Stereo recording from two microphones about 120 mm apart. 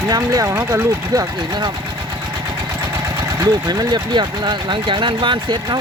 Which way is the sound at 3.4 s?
35° right (ahead or behind).